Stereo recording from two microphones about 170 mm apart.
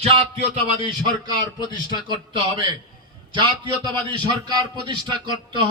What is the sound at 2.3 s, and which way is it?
A man's voice, 30° right (ahead or behind).